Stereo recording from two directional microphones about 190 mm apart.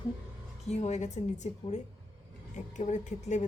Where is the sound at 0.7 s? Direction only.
35° left (ahead or behind).